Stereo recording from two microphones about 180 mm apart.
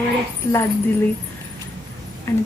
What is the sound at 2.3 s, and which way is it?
Speech, 15° left (ahead or behind).